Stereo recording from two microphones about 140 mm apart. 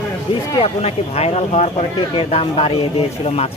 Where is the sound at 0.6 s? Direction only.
45° left (ahead or behind).